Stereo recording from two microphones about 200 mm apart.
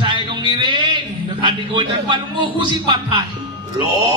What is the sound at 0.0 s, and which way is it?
A man's voice, 25° right (ahead or behind).